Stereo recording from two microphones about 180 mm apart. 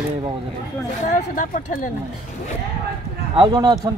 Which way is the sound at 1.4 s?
45° left (ahead or behind).